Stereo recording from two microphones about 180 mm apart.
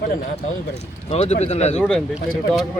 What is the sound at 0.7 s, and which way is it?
Speech, 35° left (ahead or behind).